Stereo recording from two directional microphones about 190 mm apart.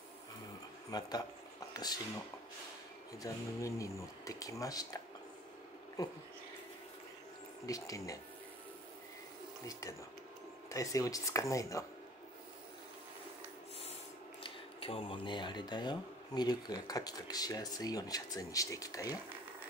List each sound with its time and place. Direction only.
0.8 s speech: 20° left (ahead or behind)
3.2 s speech: 15° left (ahead or behind)
7.6 s speech: 15° left (ahead or behind)
9.7 s speech: 15° left (ahead or behind)
14.4 s speech: 30° left (ahead or behind)